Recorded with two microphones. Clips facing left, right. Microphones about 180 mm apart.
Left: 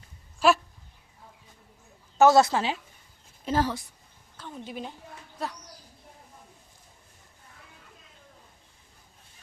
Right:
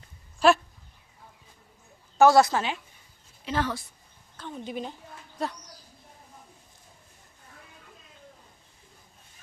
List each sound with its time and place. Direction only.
0.3 s speech: 5° left (ahead or behind)
2.1 s a woman's voice: 20° left (ahead or behind)
3.4 s a woman's voice: 40° left (ahead or behind)
4.4 s a woman's voice: 5° left (ahead or behind)